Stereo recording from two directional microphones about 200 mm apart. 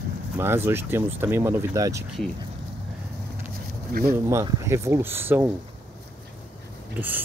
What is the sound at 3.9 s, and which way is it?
Speech, 45° right (ahead or behind).